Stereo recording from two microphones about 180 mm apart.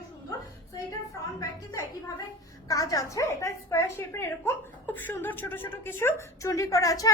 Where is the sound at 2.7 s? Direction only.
20° left (ahead or behind).